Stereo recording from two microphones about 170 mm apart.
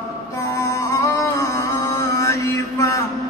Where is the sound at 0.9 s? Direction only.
15° left (ahead or behind).